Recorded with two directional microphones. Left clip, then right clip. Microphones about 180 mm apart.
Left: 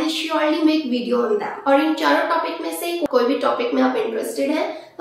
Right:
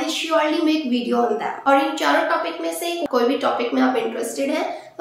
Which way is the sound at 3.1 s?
25° right (ahead or behind).